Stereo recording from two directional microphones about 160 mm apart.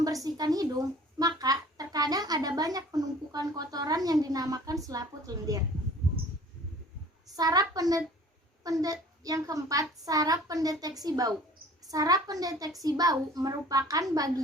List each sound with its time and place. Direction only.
0.0 s speech: 20° right (ahead or behind)
7.3 s a woman's voice: 25° right (ahead or behind)